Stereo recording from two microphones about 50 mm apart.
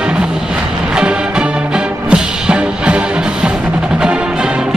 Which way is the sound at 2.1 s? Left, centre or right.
Centre.